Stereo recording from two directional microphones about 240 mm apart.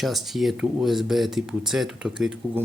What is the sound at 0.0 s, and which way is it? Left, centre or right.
Speech, centre.